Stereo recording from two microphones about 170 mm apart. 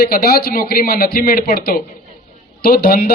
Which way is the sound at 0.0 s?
60° left (ahead or behind).